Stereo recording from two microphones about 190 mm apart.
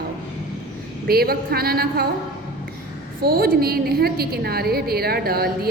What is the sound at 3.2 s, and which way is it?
A woman's voice, 50° right (ahead or behind).